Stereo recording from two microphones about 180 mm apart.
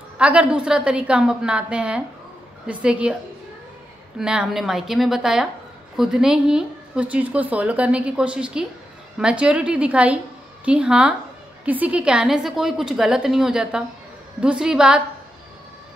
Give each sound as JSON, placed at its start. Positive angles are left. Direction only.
{"t": 0.2, "sound": "a woman's voice", "side_deg": -5}
{"t": 4.2, "sound": "a woman's voice", "side_deg": -5}